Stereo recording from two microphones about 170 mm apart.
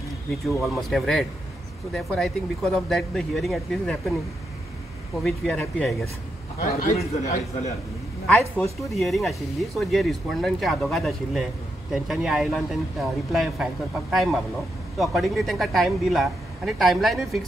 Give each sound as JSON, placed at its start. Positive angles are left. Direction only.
{"t": 0.3, "sound": "speech", "side_deg": 0}
{"t": 5.1, "sound": "speech", "side_deg": 0}
{"t": 6.6, "sound": "a man's voice", "side_deg": 50}
{"t": 8.9, "sound": "speech", "side_deg": 0}